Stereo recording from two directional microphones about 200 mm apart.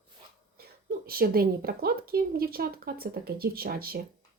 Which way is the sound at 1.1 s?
50° right (ahead or behind).